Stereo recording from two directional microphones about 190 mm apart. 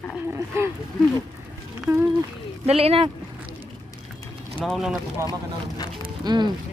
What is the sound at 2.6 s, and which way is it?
Speech, 30° right (ahead or behind).